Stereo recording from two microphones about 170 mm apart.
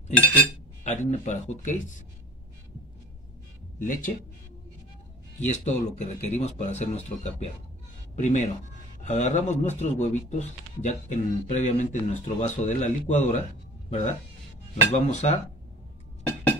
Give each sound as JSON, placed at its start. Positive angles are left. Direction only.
{"t": 0.8, "sound": "speech", "side_deg": 45}
{"t": 3.8, "sound": "speech", "side_deg": 50}
{"t": 5.4, "sound": "speech", "side_deg": 40}